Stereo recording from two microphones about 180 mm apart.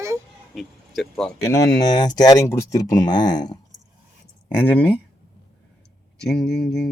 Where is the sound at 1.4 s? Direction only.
15° left (ahead or behind).